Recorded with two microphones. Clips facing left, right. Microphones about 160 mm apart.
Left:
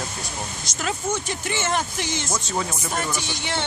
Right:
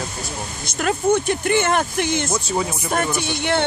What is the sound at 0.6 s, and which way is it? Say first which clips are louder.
Speech: right 9 dB; 55° right (ahead or behind).